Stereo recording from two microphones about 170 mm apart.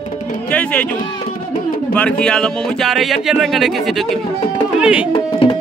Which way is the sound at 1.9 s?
5° left (ahead or behind).